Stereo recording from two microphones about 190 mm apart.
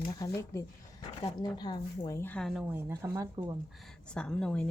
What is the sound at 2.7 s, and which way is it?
Speech, 15° right (ahead or behind).